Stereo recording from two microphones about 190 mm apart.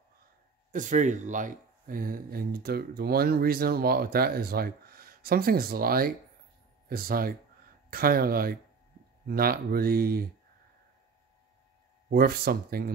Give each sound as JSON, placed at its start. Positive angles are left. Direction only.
{"t": 0.7, "sound": "speech", "side_deg": -40}
{"t": 12.1, "sound": "speech", "side_deg": -55}